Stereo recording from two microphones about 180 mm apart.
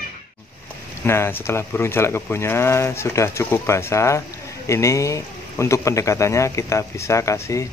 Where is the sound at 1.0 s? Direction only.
15° left (ahead or behind).